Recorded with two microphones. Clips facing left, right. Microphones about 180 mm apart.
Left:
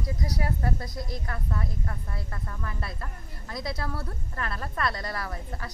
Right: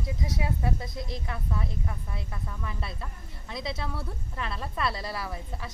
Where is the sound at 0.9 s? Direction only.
25° right (ahead or behind).